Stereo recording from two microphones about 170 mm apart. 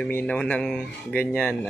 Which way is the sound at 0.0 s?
10° left (ahead or behind).